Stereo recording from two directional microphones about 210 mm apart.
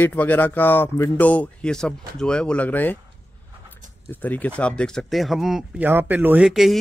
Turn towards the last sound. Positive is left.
turn(degrees=0)  # may be behind; listen again after turning